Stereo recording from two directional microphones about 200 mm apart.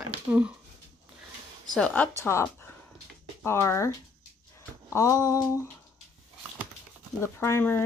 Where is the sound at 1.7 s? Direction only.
5° left (ahead or behind).